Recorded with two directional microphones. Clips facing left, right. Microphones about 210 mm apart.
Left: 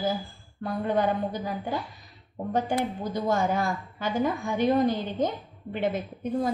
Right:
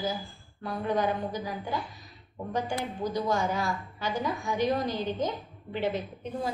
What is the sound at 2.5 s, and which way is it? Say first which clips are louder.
Speech: left 5 dB; 50° left (ahead or behind).